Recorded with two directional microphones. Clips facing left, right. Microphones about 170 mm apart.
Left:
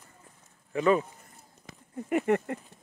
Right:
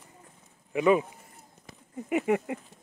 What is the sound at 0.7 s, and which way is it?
Speech, 10° right (ahead or behind).